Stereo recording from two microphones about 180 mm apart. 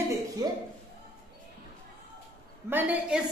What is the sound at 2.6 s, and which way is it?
Speech, 10° right (ahead or behind).